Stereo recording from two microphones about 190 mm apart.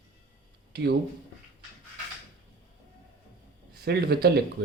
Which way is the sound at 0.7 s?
60° right (ahead or behind).